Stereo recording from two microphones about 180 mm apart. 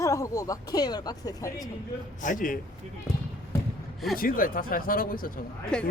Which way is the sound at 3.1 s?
5° right (ahead or behind).